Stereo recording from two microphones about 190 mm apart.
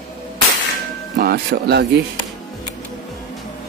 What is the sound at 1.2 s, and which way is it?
Speech, 55° right (ahead or behind).